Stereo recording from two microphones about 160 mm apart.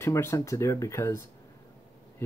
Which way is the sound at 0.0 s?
15° left (ahead or behind).